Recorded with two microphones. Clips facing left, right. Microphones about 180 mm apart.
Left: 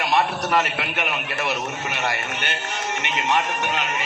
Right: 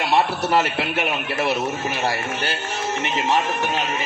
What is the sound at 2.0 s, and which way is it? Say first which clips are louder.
Speech: right 3 dB; 35° right (ahead or behind).